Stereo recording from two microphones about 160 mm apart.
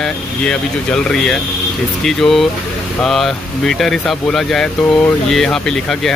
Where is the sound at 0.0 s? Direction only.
5° left (ahead or behind).